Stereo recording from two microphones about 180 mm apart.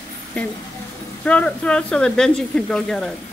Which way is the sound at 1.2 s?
5° left (ahead or behind).